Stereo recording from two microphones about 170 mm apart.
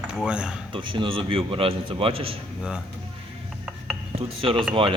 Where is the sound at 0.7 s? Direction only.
30° right (ahead or behind).